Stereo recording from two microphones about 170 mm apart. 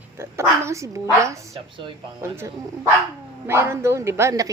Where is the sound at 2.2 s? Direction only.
15° right (ahead or behind).